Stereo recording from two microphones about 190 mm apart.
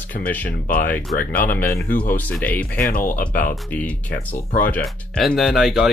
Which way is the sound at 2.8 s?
45° left (ahead or behind).